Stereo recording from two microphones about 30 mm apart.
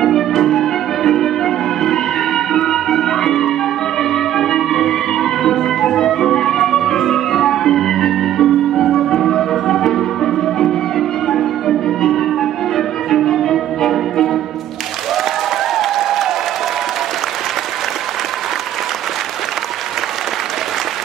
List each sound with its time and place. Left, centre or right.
0.0 s music: centre
15.7 s applause: centre